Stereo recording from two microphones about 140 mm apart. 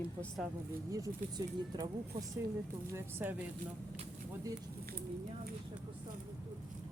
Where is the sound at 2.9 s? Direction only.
15° right (ahead or behind).